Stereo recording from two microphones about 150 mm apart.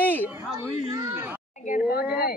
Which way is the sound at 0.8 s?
30° right (ahead or behind).